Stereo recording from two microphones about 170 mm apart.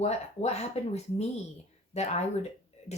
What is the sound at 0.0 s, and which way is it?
Speech, 40° left (ahead or behind).